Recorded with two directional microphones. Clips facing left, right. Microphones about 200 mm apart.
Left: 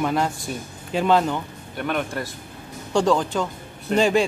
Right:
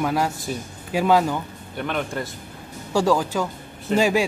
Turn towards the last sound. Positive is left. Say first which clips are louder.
# left 1 dB
turn(degrees=-10)  # may be behind; listen again after turning